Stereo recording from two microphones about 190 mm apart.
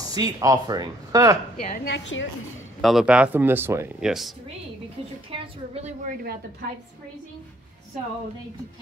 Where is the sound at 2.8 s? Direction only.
5° right (ahead or behind).